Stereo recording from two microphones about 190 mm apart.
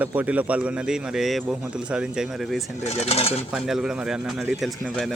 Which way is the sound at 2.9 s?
35° left (ahead or behind).